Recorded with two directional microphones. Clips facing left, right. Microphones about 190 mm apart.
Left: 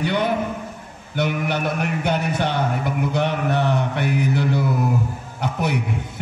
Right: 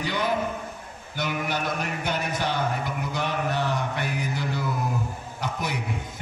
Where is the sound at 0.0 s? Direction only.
60° left (ahead or behind).